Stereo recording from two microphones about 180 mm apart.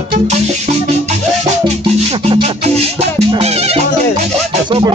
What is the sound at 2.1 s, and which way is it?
Music, 35° right (ahead or behind).